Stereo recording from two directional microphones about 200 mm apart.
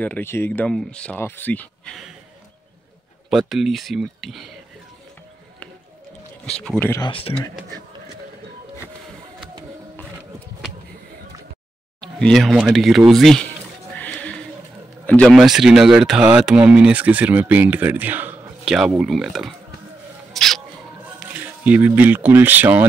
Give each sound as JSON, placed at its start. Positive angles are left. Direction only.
{"t": 0.0, "sound": "speech", "side_deg": 10}
{"t": 3.3, "sound": "speech", "side_deg": 0}
{"t": 6.6, "sound": "speech", "side_deg": 5}
{"t": 7.1, "sound": "speech", "side_deg": 25}
{"t": 12.2, "sound": "speech", "side_deg": 0}
{"t": 13.9, "sound": "music", "side_deg": 5}
{"t": 15.0, "sound": "speech", "side_deg": 5}
{"t": 20.3, "sound": "rodents", "side_deg": 0}
{"t": 21.2, "sound": "speech", "side_deg": -5}